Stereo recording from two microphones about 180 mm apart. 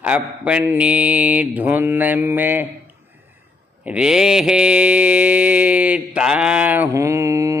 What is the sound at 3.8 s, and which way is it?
Mantra, 5° right (ahead or behind).